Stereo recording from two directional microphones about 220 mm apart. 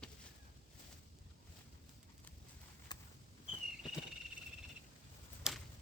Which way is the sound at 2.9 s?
20° left (ahead or behind).